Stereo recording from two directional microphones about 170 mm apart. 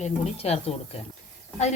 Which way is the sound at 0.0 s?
35° left (ahead or behind).